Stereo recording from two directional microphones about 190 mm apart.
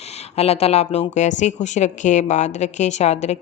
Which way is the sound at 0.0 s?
35° left (ahead or behind).